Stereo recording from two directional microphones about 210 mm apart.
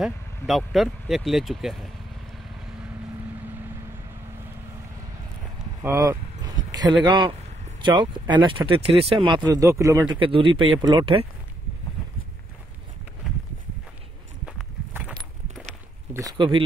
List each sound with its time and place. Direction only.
0.0 s speech: centre (ahead or behind)
5.8 s a sound: 15° right (ahead or behind)
7.1 s speech: 20° right (ahead or behind)
9.4 s speech: 15° right (ahead or behind)
10.1 s speech: 25° right (ahead or behind)
14.4 s walk: 5° right (ahead or behind)
16.1 s speech: 15° right (ahead or behind)